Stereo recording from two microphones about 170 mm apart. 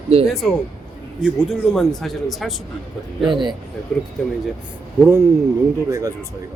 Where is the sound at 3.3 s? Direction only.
30° right (ahead or behind).